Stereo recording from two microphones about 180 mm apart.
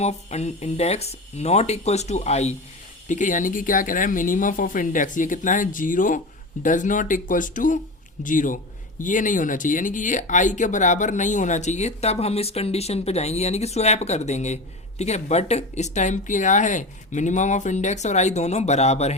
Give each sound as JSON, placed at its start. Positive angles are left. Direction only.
{"t": 0.0, "sound": "speech", "side_deg": 35}